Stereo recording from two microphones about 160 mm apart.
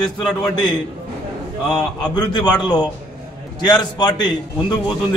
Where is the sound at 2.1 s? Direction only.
25° left (ahead or behind).